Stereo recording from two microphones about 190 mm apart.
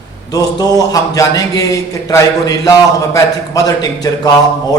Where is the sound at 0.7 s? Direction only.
20° left (ahead or behind).